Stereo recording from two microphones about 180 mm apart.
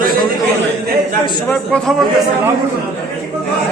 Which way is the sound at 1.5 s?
5° left (ahead or behind).